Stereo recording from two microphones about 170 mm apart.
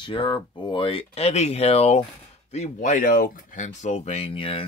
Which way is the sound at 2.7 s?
50° left (ahead or behind).